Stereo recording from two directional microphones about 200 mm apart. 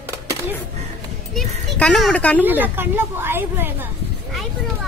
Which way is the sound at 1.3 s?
5° left (ahead or behind).